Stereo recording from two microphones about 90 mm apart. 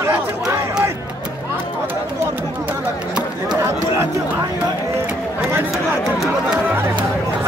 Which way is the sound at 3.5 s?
30° right (ahead or behind).